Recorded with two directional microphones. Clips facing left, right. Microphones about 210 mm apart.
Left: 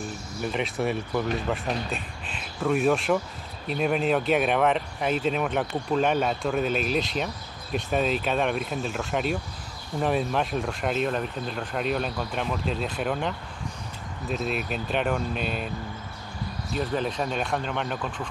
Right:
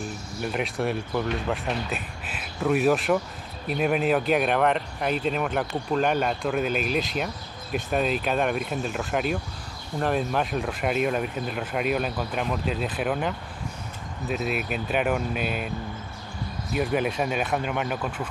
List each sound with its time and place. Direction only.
0.4 s speech: centre (ahead or behind)
14.3 s speech: 5° right (ahead or behind)
16.7 s speech: 10° right (ahead or behind)